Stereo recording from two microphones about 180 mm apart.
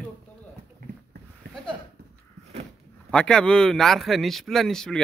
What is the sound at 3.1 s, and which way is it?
Speech, 5° left (ahead or behind).